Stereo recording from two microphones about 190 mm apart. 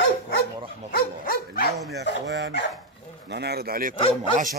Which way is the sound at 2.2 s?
70° right (ahead or behind).